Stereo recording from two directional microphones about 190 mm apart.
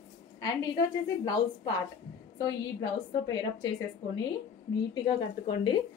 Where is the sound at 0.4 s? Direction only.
20° left (ahead or behind).